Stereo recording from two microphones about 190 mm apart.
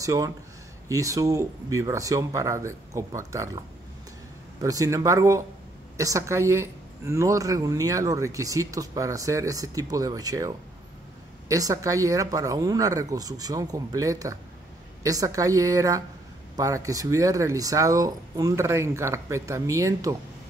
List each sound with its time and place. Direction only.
0.0 s speech: 15° right (ahead or behind)